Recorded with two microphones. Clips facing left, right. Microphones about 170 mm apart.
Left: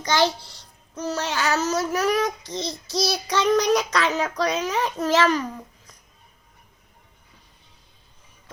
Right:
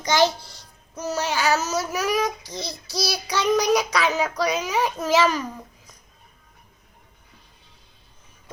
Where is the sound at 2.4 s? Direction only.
20° left (ahead or behind).